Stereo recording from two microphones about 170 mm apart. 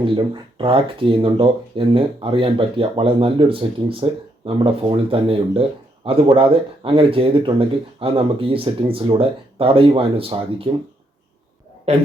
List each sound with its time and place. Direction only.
0.6 s speech: 30° right (ahead or behind)